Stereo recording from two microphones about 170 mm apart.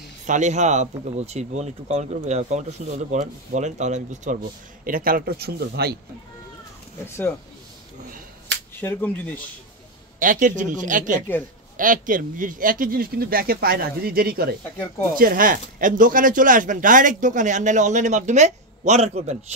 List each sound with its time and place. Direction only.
0.3 s speech: 45° right (ahead or behind)
4.8 s speech: 55° right (ahead or behind)
8.7 s speech: 10° left (ahead or behind)
10.1 s speech: 50° right (ahead or behind)